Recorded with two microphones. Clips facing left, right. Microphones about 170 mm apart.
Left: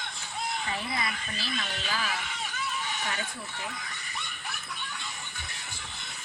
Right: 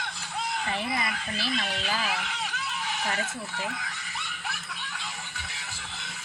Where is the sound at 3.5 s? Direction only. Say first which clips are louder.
Right 4 dB; 75° right (ahead or behind).